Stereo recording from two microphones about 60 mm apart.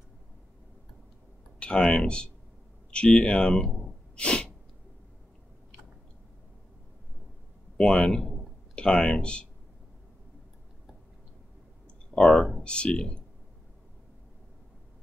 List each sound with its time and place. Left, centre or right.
1.6 s speech: centre
4.2 s sneeze: centre
7.7 s speech: centre
12.3 s speech: centre
12.6 s speech: centre